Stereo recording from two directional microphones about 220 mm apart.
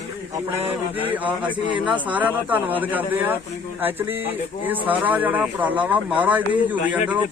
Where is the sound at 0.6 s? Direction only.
25° right (ahead or behind).